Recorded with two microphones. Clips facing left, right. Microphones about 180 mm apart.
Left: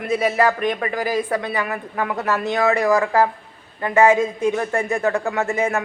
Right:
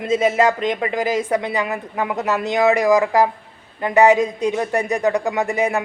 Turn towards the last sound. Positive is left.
turn(degrees=-15)  # may be behind; listen again after turning